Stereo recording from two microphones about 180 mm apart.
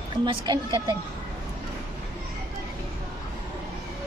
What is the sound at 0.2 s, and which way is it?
Speech, 25° right (ahead or behind).